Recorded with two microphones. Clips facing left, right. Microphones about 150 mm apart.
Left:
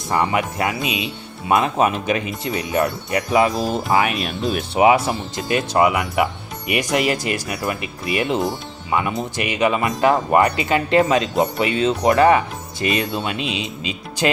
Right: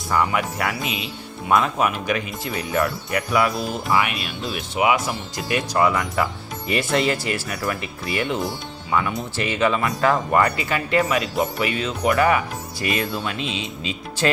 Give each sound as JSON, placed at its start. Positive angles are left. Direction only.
{"t": 0.1, "sound": "speech", "side_deg": 25}
{"t": 3.9, "sound": "speech", "side_deg": 40}
{"t": 5.0, "sound": "speech", "side_deg": 25}